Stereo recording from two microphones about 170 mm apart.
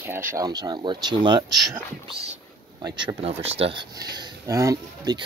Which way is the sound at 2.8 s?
25° right (ahead or behind).